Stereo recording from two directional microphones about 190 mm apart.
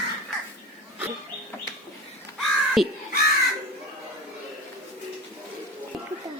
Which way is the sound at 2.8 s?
Centre (ahead or behind).